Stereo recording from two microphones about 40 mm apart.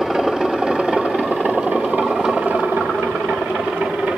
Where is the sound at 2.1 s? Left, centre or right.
Centre.